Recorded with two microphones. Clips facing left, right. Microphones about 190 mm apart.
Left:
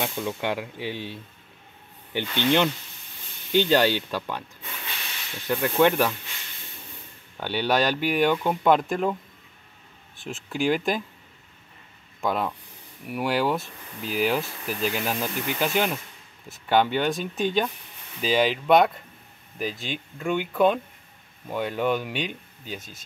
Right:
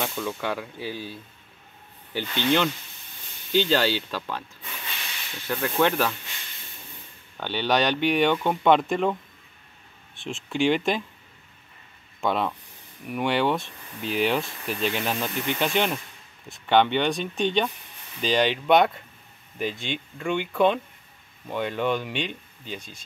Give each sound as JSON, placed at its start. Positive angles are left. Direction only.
{"t": 0.0, "sound": "speech", "side_deg": 20}
{"t": 5.5, "sound": "speech", "side_deg": 15}
{"t": 7.3, "sound": "speech", "side_deg": 10}
{"t": 10.1, "sound": "speech", "side_deg": 5}
{"t": 12.2, "sound": "speech", "side_deg": 0}